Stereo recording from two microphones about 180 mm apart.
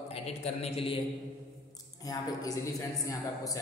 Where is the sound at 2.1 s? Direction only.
20° left (ahead or behind).